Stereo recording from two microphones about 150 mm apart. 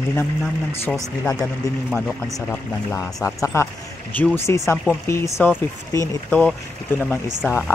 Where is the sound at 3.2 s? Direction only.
20° left (ahead or behind).